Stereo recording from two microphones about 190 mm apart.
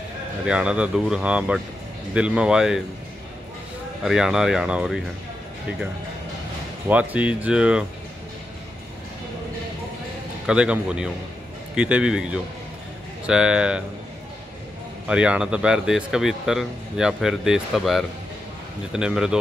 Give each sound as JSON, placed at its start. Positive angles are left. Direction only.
{"t": 0.5, "sound": "speech", "side_deg": -5}
{"t": 4.0, "sound": "speech", "side_deg": 0}
{"t": 6.9, "sound": "speech", "side_deg": -10}
{"t": 10.4, "sound": "speech", "side_deg": -5}
{"t": 15.0, "sound": "speech", "side_deg": -5}